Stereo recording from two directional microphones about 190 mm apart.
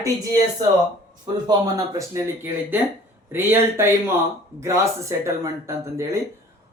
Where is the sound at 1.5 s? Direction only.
20° right (ahead or behind).